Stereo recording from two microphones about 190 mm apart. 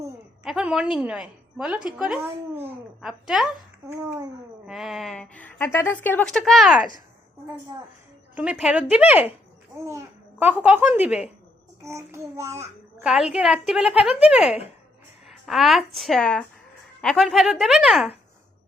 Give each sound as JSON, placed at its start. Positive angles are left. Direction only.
{"t": 0.4, "sound": "a woman's voice", "side_deg": -5}
{"t": 3.9, "sound": "a child's voice", "side_deg": -20}
{"t": 4.6, "sound": "a woman's voice", "side_deg": 0}
{"t": 8.4, "sound": "a child's voice", "side_deg": -5}
{"t": 13.1, "sound": "a woman's voice", "side_deg": -5}
{"t": 15.3, "sound": "a sound", "side_deg": 0}
{"t": 16.0, "sound": "a woman's voice", "side_deg": 0}